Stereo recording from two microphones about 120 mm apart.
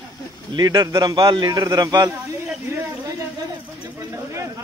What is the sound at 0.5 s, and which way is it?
Speech, 35° right (ahead or behind).